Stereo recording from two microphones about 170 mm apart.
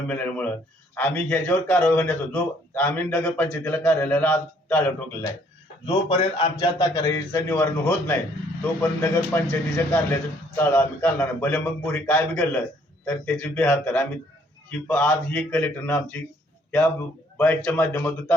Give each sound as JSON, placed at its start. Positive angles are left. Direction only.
{"t": 0.1, "sound": "a man's voice", "side_deg": 10}
{"t": 5.8, "sound": "a man's voice", "side_deg": 30}
{"t": 17.3, "sound": "a man's voice", "side_deg": 10}